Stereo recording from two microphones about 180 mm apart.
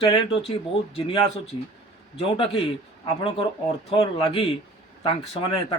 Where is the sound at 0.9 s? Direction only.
30° left (ahead or behind).